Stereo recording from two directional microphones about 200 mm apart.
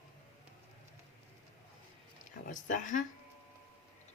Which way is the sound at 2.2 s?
40° left (ahead or behind).